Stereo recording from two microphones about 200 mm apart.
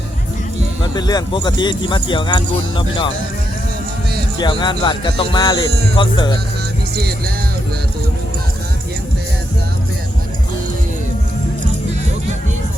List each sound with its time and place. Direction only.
0.9 s speech: 20° left (ahead or behind)
4.4 s speech: 25° left (ahead or behind)